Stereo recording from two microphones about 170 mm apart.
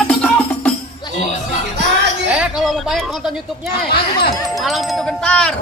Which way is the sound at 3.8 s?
65° left (ahead or behind).